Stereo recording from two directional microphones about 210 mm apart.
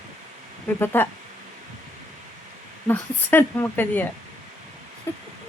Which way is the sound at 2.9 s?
10° left (ahead or behind).